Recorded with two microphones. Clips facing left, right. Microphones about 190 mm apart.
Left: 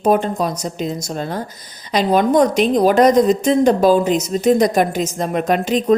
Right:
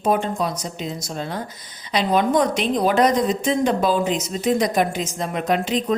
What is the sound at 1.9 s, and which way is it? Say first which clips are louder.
A woman's voice: left 4 dB; 45° left (ahead or behind).